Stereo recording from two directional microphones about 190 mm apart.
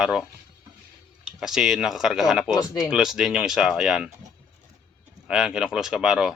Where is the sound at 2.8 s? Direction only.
5° right (ahead or behind).